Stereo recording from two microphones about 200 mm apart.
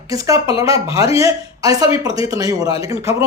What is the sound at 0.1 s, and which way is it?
A man's voice, 15° right (ahead or behind).